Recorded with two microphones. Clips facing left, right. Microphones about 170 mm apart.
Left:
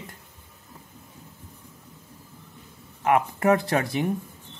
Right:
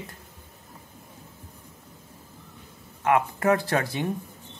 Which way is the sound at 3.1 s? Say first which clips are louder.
Left 1 dB; 20° left (ahead or behind).